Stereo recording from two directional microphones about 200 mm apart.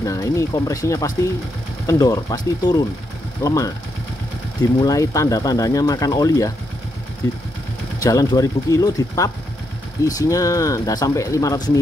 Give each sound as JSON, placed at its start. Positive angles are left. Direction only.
{"t": 0.0, "sound": "speech", "side_deg": 15}
{"t": 8.0, "sound": "speech", "side_deg": 15}